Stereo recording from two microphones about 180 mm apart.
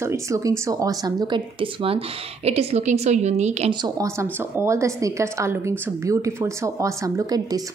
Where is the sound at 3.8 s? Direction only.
15° right (ahead or behind).